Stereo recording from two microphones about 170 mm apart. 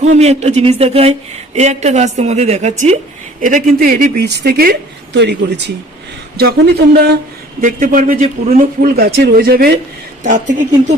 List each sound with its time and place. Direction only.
0.0 s a woman's voice: 40° right (ahead or behind); by 4.3 s 55° right (ahead or behind)
4.3 s speech: 75° right (ahead or behind)
6.3 s speech: 70° right (ahead or behind)
7.6 s a man's voice: 50° right (ahead or behind)
10.2 s speech: 45° right (ahead or behind)